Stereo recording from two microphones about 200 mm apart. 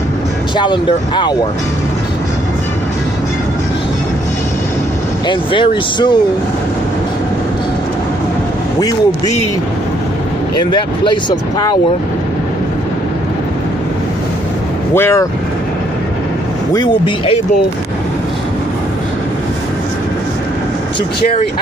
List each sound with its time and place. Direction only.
0.6 s speech: 20° left (ahead or behind)
5.3 s speech: 25° left (ahead or behind)
8.7 s speech: 20° left (ahead or behind)
10.7 s speech: 25° left (ahead or behind)
15.0 s speech: 10° left (ahead or behind)
16.7 s speech: 25° left (ahead or behind)